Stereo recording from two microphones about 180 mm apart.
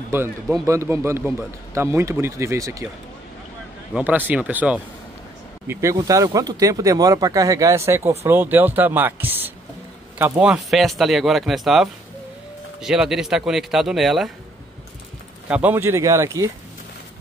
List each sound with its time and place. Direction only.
0.1 s speech: 15° right (ahead or behind)
3.9 s speech: 10° right (ahead or behind)
15.4 s speech: 10° right (ahead or behind)